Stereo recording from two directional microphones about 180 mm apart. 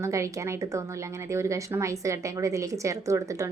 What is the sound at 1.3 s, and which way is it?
A woman's voice, 15° right (ahead or behind).